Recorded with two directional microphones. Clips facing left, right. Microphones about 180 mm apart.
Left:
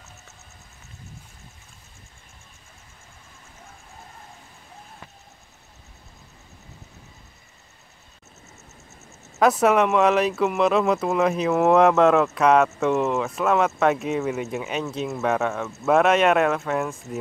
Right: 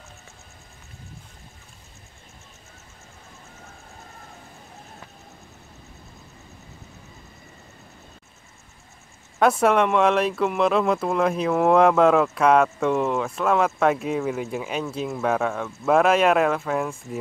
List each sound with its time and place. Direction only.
9.4 s speech: centre (ahead or behind)